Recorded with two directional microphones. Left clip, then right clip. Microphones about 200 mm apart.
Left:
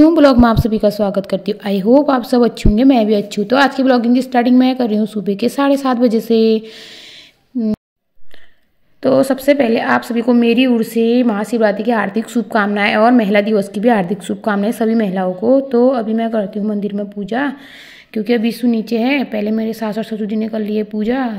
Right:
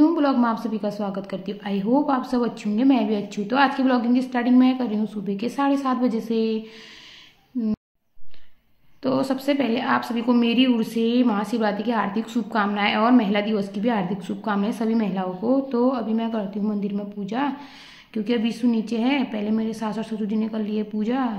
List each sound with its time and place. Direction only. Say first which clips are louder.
0.0 s a woman's voice: left 10 dB; 50° left (ahead or behind)
9.0 s a woman's voice: left 11 dB; 35° left (ahead or behind)